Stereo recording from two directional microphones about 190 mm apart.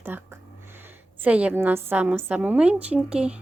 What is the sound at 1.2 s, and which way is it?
A woman's voice, 10° right (ahead or behind).